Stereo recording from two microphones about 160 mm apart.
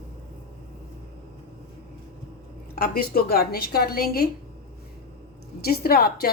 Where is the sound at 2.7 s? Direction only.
70° left (ahead or behind).